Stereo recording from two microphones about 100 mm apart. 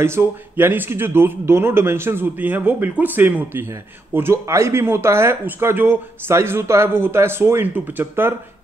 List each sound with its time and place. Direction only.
0.0 s speech: 25° right (ahead or behind)